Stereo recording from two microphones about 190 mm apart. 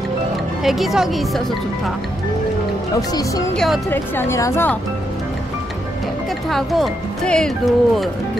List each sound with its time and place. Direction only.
0.7 s speech: centre (ahead or behind)
3.0 s speech: 20° left (ahead or behind)
3.5 s speech: centre (ahead or behind)
3.9 s a woman's voice: 15° left (ahead or behind)
6.5 s speech: centre (ahead or behind)